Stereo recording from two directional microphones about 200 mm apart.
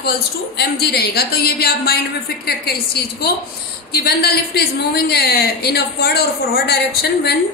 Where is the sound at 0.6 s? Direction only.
55° left (ahead or behind).